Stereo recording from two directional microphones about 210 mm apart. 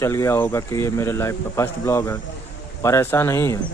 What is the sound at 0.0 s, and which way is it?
Speech, 15° left (ahead or behind).